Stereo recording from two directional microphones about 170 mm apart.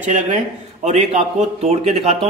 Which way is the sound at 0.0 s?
45° right (ahead or behind).